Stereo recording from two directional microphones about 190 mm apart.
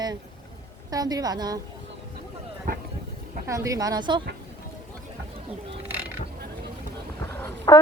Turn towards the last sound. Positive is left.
turn(degrees=15)  # may be behind; listen again after turning